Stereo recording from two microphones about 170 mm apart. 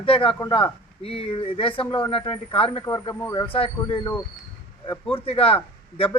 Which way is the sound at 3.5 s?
35° left (ahead or behind).